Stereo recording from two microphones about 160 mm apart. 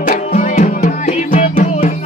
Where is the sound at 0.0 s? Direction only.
55° left (ahead or behind).